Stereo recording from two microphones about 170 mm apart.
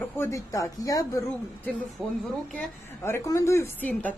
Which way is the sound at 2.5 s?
15° left (ahead or behind).